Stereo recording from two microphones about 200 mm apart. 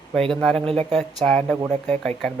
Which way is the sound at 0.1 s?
Centre (ahead or behind).